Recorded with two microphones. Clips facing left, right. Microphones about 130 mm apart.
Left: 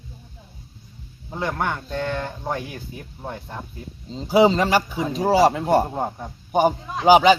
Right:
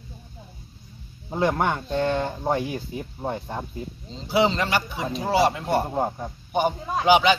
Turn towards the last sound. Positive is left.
turn(degrees=35)  # may be behind; listen again after turning